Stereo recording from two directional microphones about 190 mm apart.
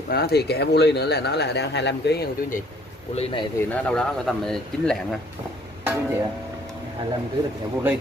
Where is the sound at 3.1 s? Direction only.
30° left (ahead or behind).